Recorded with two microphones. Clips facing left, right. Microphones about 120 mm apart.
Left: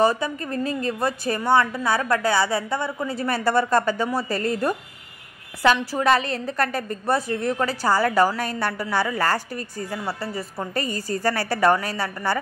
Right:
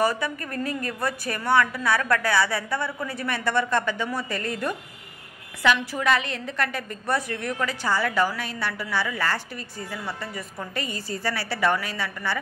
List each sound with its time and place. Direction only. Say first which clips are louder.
0.0 s a woman's voice: left 4 dB; 25° left (ahead or behind)
5.9 s a woman's voice: left 4 dB; 35° left (ahead or behind)